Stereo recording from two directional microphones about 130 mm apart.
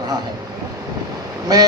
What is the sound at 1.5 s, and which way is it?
Speech, 30° right (ahead or behind).